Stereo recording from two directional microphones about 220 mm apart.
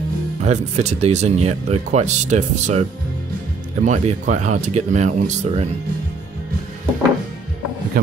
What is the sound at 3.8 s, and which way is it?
Speech, 30° right (ahead or behind).